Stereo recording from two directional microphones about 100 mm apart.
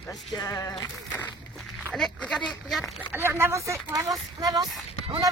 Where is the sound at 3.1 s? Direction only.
20° right (ahead or behind).